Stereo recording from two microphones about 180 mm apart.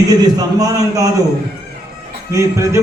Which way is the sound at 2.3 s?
15° right (ahead or behind).